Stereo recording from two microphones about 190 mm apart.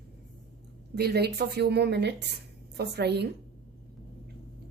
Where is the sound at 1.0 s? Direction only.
60° right (ahead or behind).